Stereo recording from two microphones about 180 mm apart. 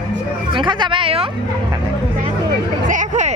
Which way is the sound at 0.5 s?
25° right (ahead or behind).